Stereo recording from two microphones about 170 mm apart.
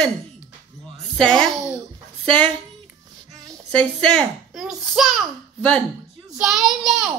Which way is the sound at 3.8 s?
5° left (ahead or behind).